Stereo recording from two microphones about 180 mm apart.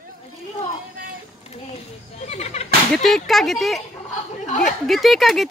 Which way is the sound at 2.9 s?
Centre (ahead or behind).